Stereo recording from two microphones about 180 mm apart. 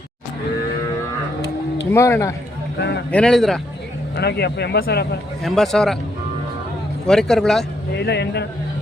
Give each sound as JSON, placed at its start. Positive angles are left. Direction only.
{"t": 1.9, "sound": "speech", "side_deg": 15}
{"t": 2.7, "sound": "speech", "side_deg": 70}
{"t": 3.1, "sound": "a man's voice", "side_deg": 5}
{"t": 4.1, "sound": "speech", "side_deg": 65}
{"t": 5.4, "sound": "a man's voice", "side_deg": 0}
{"t": 7.1, "sound": "a man's voice", "side_deg": 0}
{"t": 7.9, "sound": "speech", "side_deg": 70}